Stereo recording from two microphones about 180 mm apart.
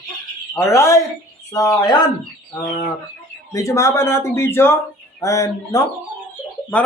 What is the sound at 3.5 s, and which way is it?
A man's voice, 20° left (ahead or behind).